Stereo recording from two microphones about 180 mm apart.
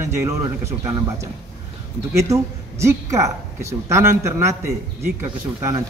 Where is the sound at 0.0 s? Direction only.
15° right (ahead or behind).